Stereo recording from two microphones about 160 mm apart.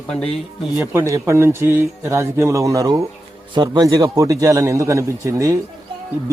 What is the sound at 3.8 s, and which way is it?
Speech, 20° right (ahead or behind).